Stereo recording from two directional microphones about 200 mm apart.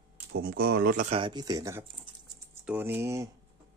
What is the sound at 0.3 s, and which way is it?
Speech, 50° right (ahead or behind).